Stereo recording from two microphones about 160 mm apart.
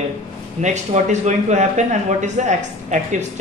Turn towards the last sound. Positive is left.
turn(degrees=-50)  # may be behind; listen again after turning